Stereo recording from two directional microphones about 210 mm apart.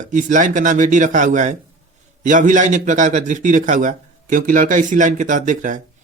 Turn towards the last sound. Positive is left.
turn(degrees=-35)  # may be behind; listen again after turning